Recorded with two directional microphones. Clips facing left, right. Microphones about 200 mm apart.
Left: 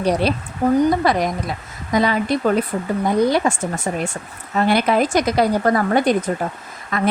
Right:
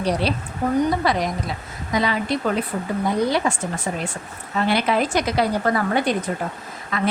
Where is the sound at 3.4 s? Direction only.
40° left (ahead or behind).